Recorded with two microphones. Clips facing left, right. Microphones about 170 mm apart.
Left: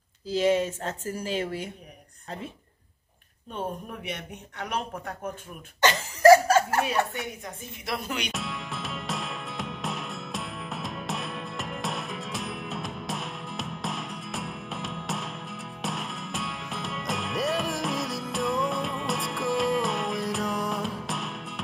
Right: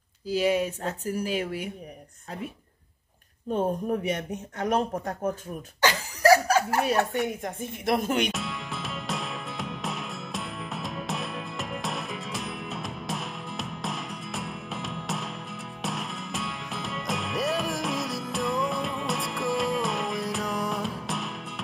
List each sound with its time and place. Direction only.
0.3 s speech: 10° right (ahead or behind)
3.4 s speech: 40° right (ahead or behind)
5.8 s laughter: 10° right (ahead or behind)
6.9 s speech: 50° right (ahead or behind)
8.3 s music: centre (ahead or behind)